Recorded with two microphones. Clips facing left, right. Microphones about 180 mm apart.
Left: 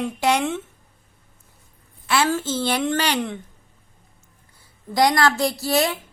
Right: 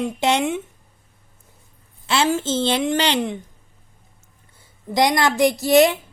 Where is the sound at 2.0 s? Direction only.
25° right (ahead or behind).